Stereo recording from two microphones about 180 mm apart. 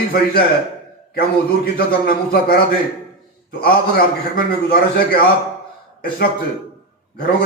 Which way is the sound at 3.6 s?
55° left (ahead or behind).